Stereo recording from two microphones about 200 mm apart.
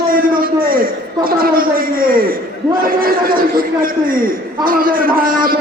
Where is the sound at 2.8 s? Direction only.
45° right (ahead or behind).